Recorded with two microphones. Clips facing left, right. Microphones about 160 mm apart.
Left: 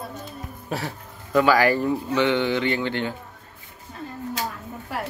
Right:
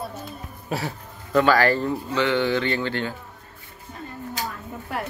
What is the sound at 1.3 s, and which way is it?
Speech, 10° left (ahead or behind).